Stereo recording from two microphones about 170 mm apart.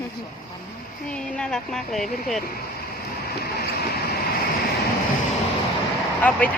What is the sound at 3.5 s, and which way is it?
Vehicle, 65° left (ahead or behind).